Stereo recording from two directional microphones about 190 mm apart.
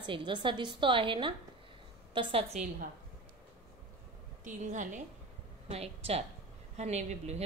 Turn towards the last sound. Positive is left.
turn(degrees=-35)  # may be behind; listen again after turning